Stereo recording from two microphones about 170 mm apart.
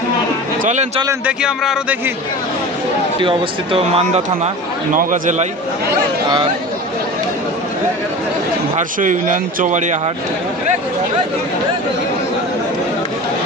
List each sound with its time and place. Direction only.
0.6 s a man's voice: 45° right (ahead or behind)
1.2 s speech: 5° right (ahead or behind)
3.2 s speech: 30° right (ahead or behind)
4.9 s speech: 50° right (ahead or behind)
8.7 s speech: 50° right (ahead or behind)